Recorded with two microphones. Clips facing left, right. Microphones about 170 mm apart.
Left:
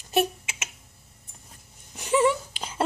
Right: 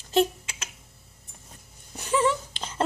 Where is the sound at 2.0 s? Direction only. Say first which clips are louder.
Left 2 dB; 15° left (ahead or behind).